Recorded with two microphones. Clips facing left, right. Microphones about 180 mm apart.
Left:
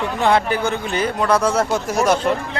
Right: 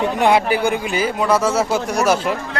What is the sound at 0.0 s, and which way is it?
Speech, 15° right (ahead or behind).